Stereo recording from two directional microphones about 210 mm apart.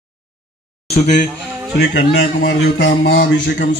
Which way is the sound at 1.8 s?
50° left (ahead or behind).